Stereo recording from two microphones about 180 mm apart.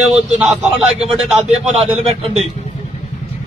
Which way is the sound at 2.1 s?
35° right (ahead or behind).